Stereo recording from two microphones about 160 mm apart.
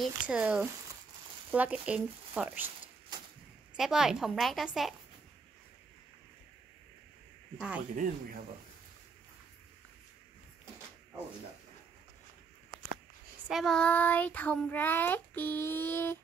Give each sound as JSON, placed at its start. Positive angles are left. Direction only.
{"t": 0.0, "sound": "speech", "side_deg": -5}
{"t": 3.7, "sound": "a woman's voice", "side_deg": -5}
{"t": 7.5, "sound": "a woman's voice", "side_deg": -5}
{"t": 7.9, "sound": "speech", "side_deg": -55}
{"t": 13.5, "sound": "child singing", "side_deg": 0}